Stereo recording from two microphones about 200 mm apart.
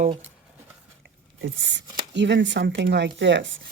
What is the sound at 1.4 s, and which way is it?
Speech, 65° right (ahead or behind).